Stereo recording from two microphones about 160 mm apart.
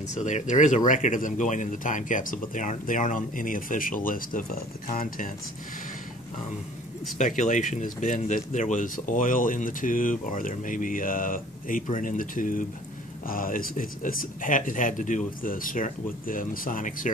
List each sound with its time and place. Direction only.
0.1 s speech: 50° left (ahead or behind)
7.2 s speech: 55° left (ahead or behind)